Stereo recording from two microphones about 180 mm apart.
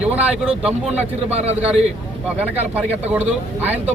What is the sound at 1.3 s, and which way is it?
Speech, 35° right (ahead or behind).